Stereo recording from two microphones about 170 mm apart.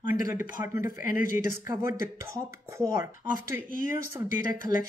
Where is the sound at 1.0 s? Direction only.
55° left (ahead or behind).